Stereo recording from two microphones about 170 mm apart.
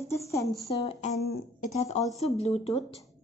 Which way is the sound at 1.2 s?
65° left (ahead or behind).